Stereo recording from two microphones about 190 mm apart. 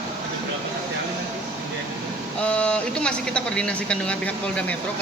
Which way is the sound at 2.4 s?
5° left (ahead or behind).